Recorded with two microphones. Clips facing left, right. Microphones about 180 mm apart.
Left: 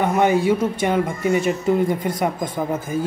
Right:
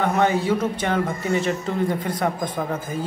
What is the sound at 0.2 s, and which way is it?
Speech, 15° left (ahead or behind).